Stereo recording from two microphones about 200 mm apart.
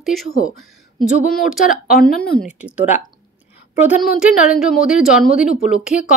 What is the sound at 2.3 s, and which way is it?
Speech, 30° right (ahead or behind).